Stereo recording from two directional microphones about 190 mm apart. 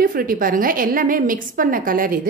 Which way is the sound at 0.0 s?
50° right (ahead or behind).